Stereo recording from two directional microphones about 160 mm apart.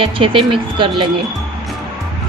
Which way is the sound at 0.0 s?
35° right (ahead or behind).